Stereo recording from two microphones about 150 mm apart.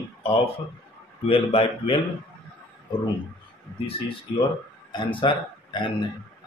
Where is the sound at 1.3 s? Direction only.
40° left (ahead or behind).